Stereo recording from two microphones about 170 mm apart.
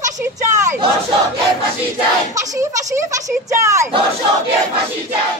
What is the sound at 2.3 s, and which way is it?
Speech, 20° right (ahead or behind).